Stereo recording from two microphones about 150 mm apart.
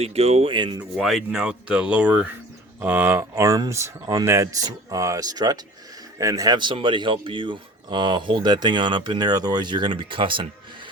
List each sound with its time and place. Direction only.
0.0 s speech: 45° right (ahead or behind)
0.9 s speech: centre (ahead or behind); by 10.4 s 35° right (ahead or behind)